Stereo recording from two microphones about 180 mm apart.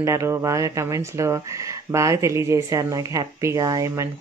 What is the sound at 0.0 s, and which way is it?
Speech, 15° right (ahead or behind).